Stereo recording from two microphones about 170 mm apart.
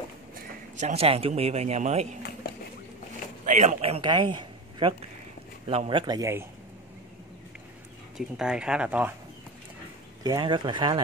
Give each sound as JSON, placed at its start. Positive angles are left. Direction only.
{"t": 0.3, "sound": "a man's voice", "side_deg": -45}
{"t": 3.4, "sound": "a man's voice", "side_deg": -45}
{"t": 8.2, "sound": "speech", "side_deg": -5}
{"t": 10.2, "sound": "speech", "side_deg": -25}